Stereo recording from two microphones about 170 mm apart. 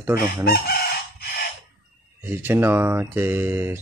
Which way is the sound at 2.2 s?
10° right (ahead or behind).